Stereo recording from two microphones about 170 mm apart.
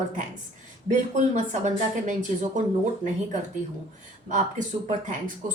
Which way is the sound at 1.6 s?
45° right (ahead or behind).